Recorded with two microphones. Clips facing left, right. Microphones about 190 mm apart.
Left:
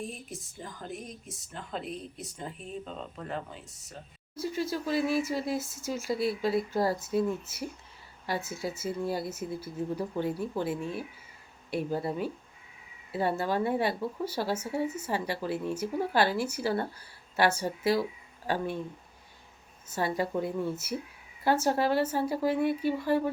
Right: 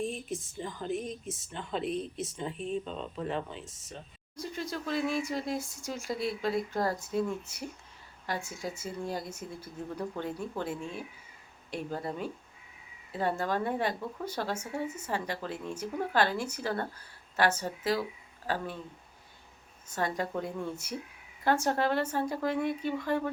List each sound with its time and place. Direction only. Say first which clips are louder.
0.0 s speech: right 5 dB; centre (ahead or behind)
1.8 s speech: right 6 dB; 20° right (ahead or behind)
2.2 s speech: right 4 dB; centre (ahead or behind)
2.6 s speech: right 6 dB; 30° right (ahead or behind)
3.7 s speech: right 1 dB; centre (ahead or behind)
19.9 s speech: left 3 dB; 5° left (ahead or behind)